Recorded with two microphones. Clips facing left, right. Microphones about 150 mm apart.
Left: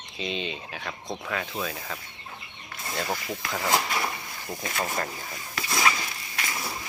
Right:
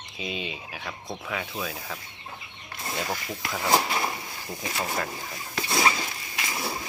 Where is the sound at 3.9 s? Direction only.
20° right (ahead or behind).